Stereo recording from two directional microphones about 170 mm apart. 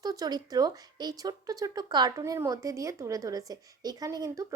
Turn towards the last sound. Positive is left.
turn(degrees=-20)  # may be behind; listen again after turning